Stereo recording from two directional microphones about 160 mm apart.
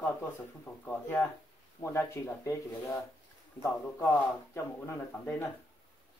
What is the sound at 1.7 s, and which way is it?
Speech, 15° left (ahead or behind).